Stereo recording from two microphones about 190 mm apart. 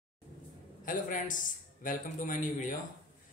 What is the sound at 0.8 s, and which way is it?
A man's voice, 45° left (ahead or behind).